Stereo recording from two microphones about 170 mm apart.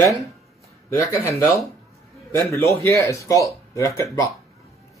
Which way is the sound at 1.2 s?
15° left (ahead or behind).